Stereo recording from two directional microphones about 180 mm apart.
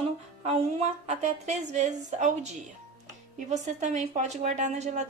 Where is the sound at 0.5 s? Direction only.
35° right (ahead or behind).